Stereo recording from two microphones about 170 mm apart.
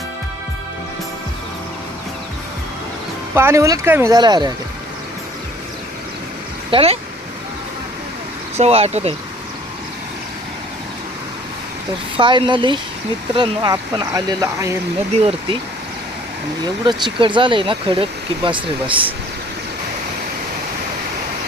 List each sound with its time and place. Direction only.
3.3 s speech: 15° right (ahead or behind)
6.7 s speech: 35° right (ahead or behind)
8.5 s speech: 40° right (ahead or behind)
12.1 s speech: 30° right (ahead or behind)
15.2 s speech: 35° right (ahead or behind)
16.8 s speech: 25° right (ahead or behind)